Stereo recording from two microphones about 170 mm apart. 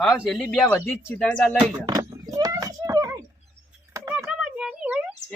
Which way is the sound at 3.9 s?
5° right (ahead or behind).